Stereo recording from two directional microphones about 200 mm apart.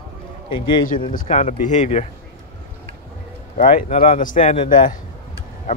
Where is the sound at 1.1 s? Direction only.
35° left (ahead or behind).